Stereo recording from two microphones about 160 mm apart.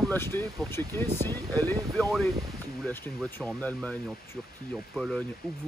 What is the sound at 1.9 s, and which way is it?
Speech, centre (ahead or behind).